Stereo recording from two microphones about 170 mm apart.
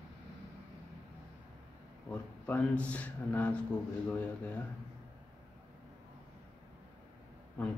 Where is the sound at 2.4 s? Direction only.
5° left (ahead or behind).